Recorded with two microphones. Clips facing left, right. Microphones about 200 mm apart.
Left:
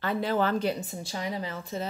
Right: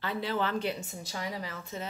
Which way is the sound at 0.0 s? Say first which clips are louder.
Left 5 dB; 45° left (ahead or behind).